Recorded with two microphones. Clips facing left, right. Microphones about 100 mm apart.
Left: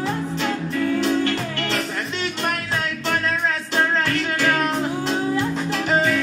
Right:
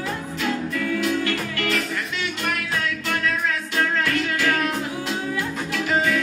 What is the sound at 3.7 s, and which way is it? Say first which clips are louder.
Music: left 2 dB; 35° left (ahead or behind).